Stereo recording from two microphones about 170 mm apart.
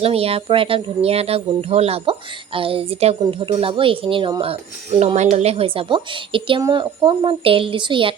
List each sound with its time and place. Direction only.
0.0 s a woman's voice: 35° right (ahead or behind)